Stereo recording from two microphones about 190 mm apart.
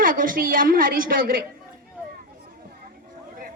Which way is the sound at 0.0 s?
45° right (ahead or behind).